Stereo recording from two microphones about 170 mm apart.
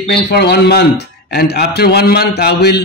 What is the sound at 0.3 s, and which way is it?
A man's voice, 75° left (ahead or behind).